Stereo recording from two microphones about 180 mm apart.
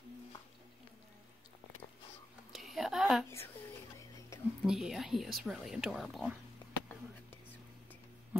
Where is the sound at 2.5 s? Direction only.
Centre (ahead or behind).